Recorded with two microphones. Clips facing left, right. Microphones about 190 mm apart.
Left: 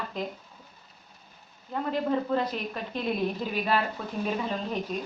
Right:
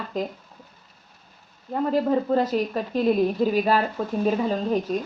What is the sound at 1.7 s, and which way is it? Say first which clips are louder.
Speech: right 6 dB; 40° right (ahead or behind).